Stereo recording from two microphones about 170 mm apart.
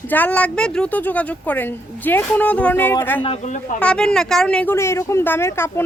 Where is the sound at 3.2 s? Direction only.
40° left (ahead or behind).